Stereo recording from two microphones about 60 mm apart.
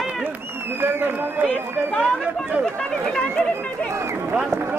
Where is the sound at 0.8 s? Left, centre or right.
Right.